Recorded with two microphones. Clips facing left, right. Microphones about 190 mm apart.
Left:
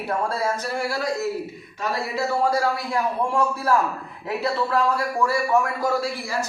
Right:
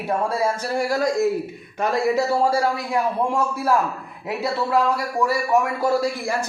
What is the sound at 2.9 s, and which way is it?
A man's voice, 20° right (ahead or behind).